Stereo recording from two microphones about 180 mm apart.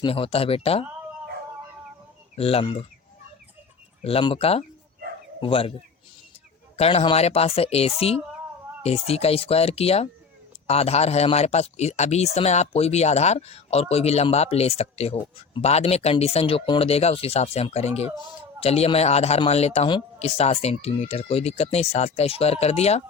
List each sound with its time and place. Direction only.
0.0 s a man's voice: 30° left (ahead or behind)
2.3 s a man's voice: 35° left (ahead or behind)
4.0 s a man's voice: 30° left (ahead or behind)
6.7 s a man's voice: 35° left (ahead or behind)